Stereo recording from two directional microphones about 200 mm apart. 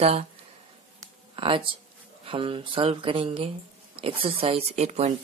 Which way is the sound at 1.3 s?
25° right (ahead or behind).